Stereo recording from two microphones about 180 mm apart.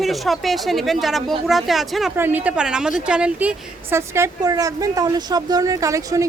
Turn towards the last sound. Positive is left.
turn(degrees=-15)  # may be behind; listen again after turning